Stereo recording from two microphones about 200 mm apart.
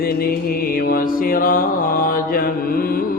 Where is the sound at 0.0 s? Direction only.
50° left (ahead or behind).